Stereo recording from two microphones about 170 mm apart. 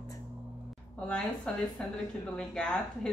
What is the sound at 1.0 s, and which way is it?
A woman's voice, 5° left (ahead or behind).